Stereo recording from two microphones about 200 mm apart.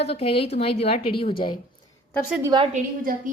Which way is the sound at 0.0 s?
30° left (ahead or behind).